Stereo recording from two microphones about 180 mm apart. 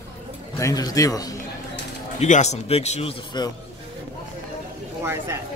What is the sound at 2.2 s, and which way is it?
Speech, 40° left (ahead or behind).